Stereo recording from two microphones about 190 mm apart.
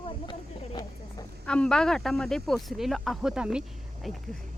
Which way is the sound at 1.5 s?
5° left (ahead or behind).